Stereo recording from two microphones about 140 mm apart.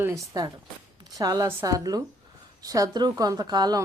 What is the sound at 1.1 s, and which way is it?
A woman's voice, 25° right (ahead or behind).